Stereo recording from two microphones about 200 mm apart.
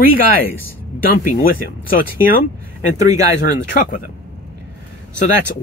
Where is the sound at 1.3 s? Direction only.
45° left (ahead or behind).